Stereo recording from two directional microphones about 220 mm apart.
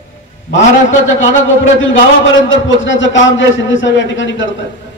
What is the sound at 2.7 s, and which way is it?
A man's voice, 60° left (ahead or behind).